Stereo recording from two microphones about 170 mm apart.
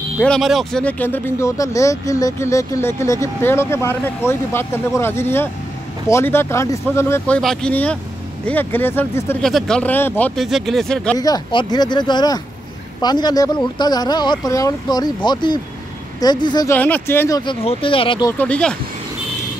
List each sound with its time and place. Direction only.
0.2 s speech: centre (ahead or behind)
9.4 s speech: centre (ahead or behind)
10.4 s speech: centre (ahead or behind)
11.1 s speech: 20° left (ahead or behind)
16.7 s speech: 10° left (ahead or behind)
17.4 s speech: 30° left (ahead or behind)
18.4 s speech: 5° left (ahead or behind)